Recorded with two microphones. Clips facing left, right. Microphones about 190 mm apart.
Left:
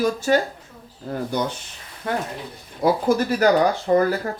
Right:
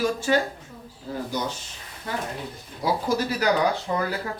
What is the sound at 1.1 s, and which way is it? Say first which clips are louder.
Speech: left 3 dB; 55° left (ahead or behind).